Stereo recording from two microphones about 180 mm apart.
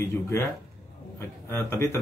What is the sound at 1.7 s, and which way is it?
Speech, 15° left (ahead or behind).